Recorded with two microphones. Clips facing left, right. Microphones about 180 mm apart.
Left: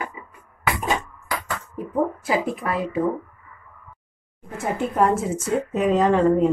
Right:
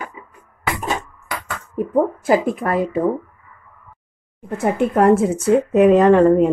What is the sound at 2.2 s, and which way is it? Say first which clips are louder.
Speech: right 6 dB; 50° right (ahead or behind).